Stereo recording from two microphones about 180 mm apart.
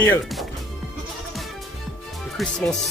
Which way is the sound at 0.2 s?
Centre (ahead or behind).